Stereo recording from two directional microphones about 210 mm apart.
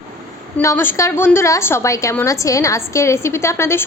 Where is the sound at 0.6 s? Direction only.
10° left (ahead or behind).